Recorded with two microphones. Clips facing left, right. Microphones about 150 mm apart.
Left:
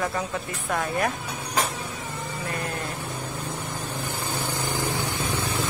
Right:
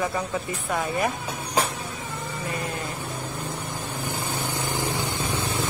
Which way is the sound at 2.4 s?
5° right (ahead or behind).